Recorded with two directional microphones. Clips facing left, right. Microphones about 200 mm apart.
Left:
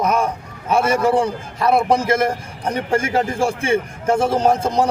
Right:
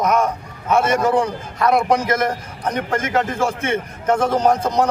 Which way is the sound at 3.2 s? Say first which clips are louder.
Left 1 dB; 10° left (ahead or behind).